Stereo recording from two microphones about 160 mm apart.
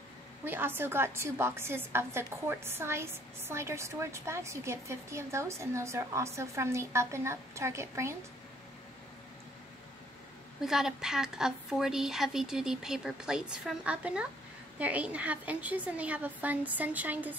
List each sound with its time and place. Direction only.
0.5 s a woman's voice: 15° right (ahead or behind)
10.6 s a woman's voice: 5° right (ahead or behind)